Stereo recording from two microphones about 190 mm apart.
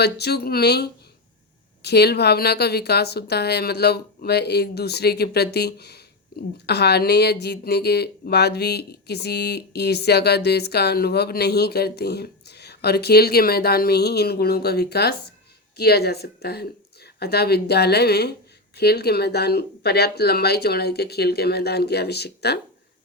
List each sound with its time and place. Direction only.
0.0 s speech: 60° left (ahead or behind)